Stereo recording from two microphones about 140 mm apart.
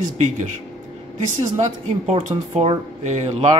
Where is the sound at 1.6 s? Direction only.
55° right (ahead or behind).